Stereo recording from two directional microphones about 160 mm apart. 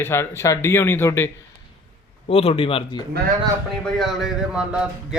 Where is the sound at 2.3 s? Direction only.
35° left (ahead or behind).